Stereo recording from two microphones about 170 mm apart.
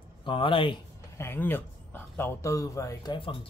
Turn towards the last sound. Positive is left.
turn(degrees=30)  # may be behind; listen again after turning